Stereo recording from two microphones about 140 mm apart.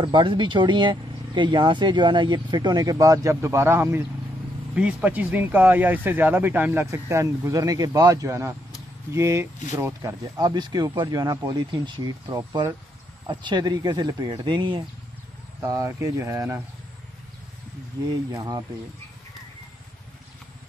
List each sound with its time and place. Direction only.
0.0 s speech: 35° right (ahead or behind)
15.6 s speech: 20° right (ahead or behind)
18.3 s speech: 25° right (ahead or behind)